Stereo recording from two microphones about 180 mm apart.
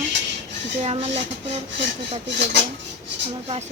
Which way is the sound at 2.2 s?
70° right (ahead or behind).